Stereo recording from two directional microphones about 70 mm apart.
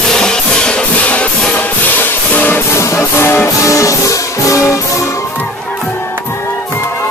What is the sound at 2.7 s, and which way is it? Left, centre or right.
Music, left.